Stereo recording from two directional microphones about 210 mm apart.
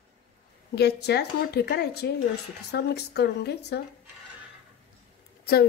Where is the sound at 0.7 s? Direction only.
50° left (ahead or behind).